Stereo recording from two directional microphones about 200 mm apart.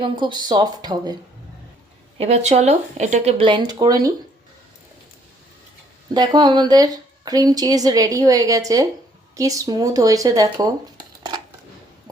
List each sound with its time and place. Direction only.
0.0 s a woman's voice: 20° right (ahead or behind)
2.1 s a woman's voice: 30° right (ahead or behind)
6.1 s a woman's voice: 20° right (ahead or behind)
11.2 s scissors: 20° right (ahead or behind)